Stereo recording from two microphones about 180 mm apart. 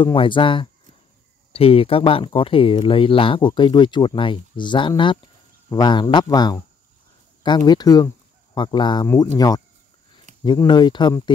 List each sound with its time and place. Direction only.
0.0 s speech: 30° left (ahead or behind)
10.4 s speech: 25° left (ahead or behind)